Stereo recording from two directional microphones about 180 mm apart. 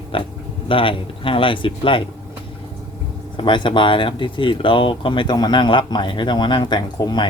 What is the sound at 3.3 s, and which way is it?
Speech, 25° left (ahead or behind).